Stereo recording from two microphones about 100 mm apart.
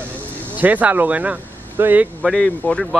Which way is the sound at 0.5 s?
15° right (ahead or behind).